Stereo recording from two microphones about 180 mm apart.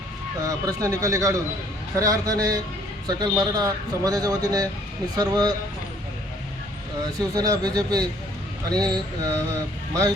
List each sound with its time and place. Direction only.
0.4 s a man's voice: 20° right (ahead or behind)
7.2 s a man's voice: 20° right (ahead or behind)